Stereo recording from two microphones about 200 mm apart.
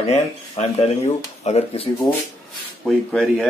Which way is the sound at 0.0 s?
30° left (ahead or behind).